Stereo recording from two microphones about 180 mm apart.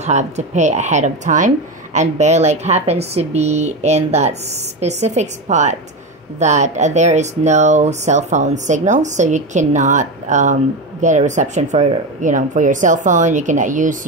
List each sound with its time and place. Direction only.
0.0 s speech: 40° right (ahead or behind)